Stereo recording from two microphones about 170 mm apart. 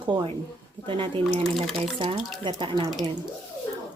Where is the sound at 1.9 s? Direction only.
30° right (ahead or behind).